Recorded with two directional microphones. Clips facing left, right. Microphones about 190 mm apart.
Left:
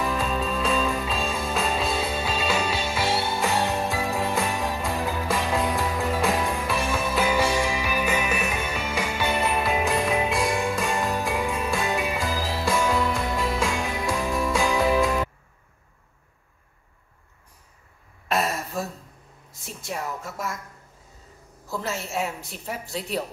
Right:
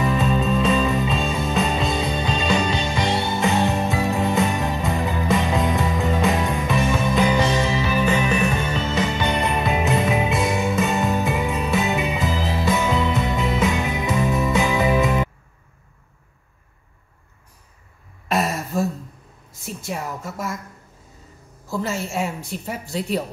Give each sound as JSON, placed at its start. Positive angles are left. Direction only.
{"t": 0.0, "sound": "music", "side_deg": 0}
{"t": 18.3, "sound": "throat clearing", "side_deg": 0}
{"t": 19.6, "sound": "a sound", "side_deg": 0}
{"t": 21.6, "sound": "a woman's voice", "side_deg": 0}